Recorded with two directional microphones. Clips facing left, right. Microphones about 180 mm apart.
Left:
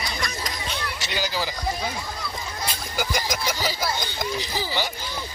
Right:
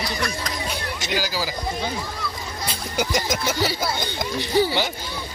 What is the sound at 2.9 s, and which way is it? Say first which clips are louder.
Speech: right 4 dB; 25° right (ahead or behind).